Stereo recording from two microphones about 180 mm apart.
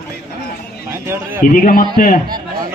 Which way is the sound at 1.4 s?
50° left (ahead or behind).